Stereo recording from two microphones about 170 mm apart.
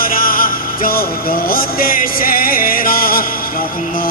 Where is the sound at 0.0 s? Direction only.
55° left (ahead or behind).